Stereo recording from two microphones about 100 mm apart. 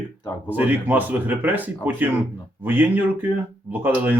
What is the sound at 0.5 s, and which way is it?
Speech, 15° right (ahead or behind).